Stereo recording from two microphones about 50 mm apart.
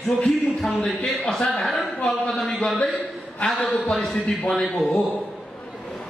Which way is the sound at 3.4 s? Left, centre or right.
Centre.